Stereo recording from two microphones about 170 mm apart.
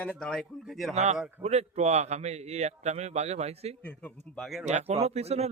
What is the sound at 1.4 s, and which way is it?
A man's voice, 40° right (ahead or behind).